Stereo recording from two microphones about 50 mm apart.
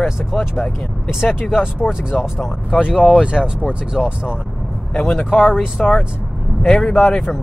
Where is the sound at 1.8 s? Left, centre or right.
Left.